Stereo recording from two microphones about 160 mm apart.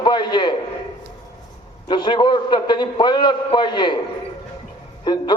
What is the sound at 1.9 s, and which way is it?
A man's voice, 30° left (ahead or behind).